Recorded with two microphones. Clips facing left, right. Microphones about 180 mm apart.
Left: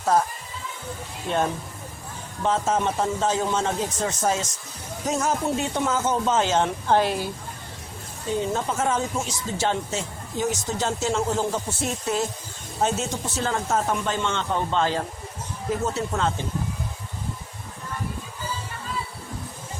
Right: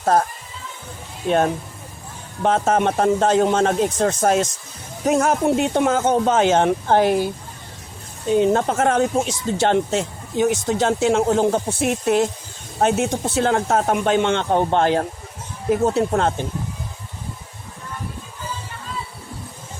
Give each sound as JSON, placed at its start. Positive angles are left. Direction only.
{"t": 0.0, "sound": "speech", "side_deg": -55}
{"t": 2.4, "sound": "speech", "side_deg": -65}
{"t": 8.4, "sound": "speech", "side_deg": -65}